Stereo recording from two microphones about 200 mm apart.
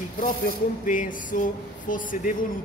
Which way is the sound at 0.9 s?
40° left (ahead or behind).